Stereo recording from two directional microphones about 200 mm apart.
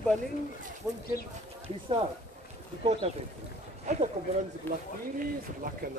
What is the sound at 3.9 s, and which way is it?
Speech, 35° right (ahead or behind).